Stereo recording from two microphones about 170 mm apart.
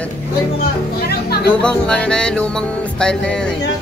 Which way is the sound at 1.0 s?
70° left (ahead or behind).